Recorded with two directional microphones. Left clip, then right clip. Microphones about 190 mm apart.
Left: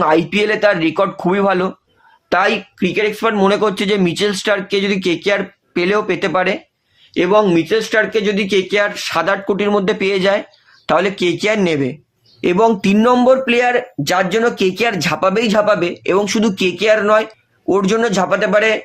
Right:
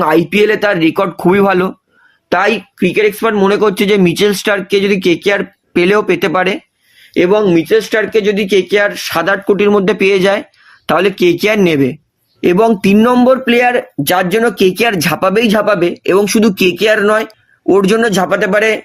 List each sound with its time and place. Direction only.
0.0 s speech: 45° right (ahead or behind)